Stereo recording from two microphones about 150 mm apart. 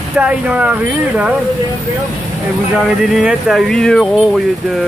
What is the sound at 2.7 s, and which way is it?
Speech, centre (ahead or behind).